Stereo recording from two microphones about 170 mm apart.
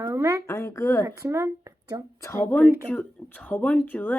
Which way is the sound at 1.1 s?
15° right (ahead or behind).